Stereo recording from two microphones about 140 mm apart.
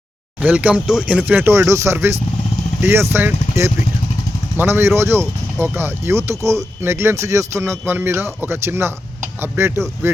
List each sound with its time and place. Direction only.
0.4 s speech: 10° right (ahead or behind)